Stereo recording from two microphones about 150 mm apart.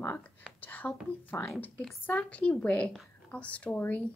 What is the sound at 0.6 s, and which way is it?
Speech, 10° left (ahead or behind).